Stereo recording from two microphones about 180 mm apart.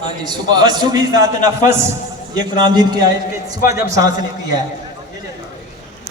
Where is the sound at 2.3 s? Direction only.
25° right (ahead or behind).